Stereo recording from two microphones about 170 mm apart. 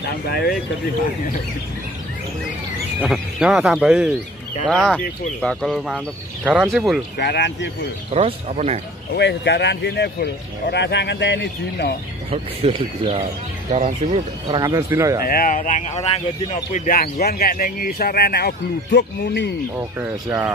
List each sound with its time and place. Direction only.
0.3 s speech: 65° left (ahead or behind)
3.0 s speech: 5° right (ahead or behind)
7.2 s speech: 85° left
8.1 s speech: 35° right (ahead or behind)
9.1 s speech: 90° left
12.3 s speech: 30° right (ahead or behind)
14.5 s speech: 20° right (ahead or behind)
15.1 s speech: 60° left (ahead or behind); by 16.2 s 40° left (ahead or behind)
16.7 s speech: 55° left (ahead or behind); by 19.5 s 90° left
19.8 s speech: 15° right (ahead or behind)